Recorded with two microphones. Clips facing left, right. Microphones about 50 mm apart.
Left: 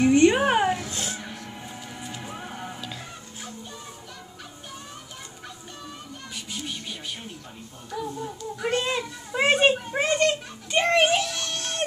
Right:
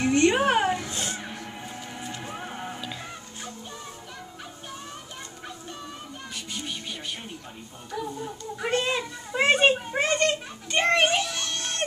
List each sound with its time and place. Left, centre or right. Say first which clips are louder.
0.1 s music: left 2 dB; centre
2.3 s music: right 1 dB; centre
6.3 s music: left 1 dB; centre
7.9 s a sound: left 1 dB; centre